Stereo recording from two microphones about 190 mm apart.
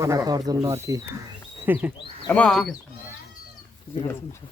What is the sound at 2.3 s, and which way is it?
Speech, 5° left (ahead or behind).